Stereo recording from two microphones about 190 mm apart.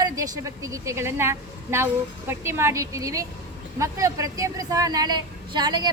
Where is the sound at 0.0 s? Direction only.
15° right (ahead or behind).